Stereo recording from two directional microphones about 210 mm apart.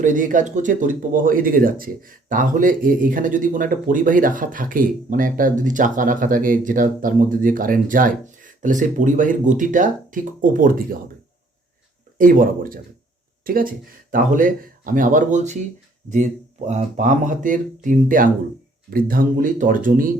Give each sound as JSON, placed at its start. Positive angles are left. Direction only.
{"t": 0.0, "sound": "speech", "side_deg": -40}
{"t": 12.1, "sound": "speech", "side_deg": -40}